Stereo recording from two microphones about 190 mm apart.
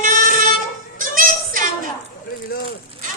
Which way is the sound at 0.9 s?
45° right (ahead or behind).